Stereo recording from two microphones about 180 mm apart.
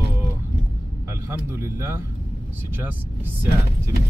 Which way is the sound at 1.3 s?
15° right (ahead or behind).